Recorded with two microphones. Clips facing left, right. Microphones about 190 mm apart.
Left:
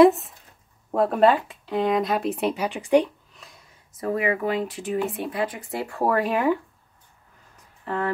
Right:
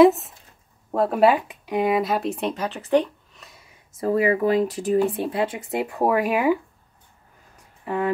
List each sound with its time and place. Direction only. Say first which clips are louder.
0.0 s speech: right 1 dB; centre (ahead or behind)
1.3 s speech: right 1 dB; 15° right (ahead or behind); by 3.1 s 15° left (ahead or behind)
3.3 s a sound: even; centre (ahead or behind)
4.0 s speech: right 4 dB; 35° right (ahead or behind); by 6.6 s 10° right (ahead or behind)
7.8 s speech: right 2 dB; 15° right (ahead or behind)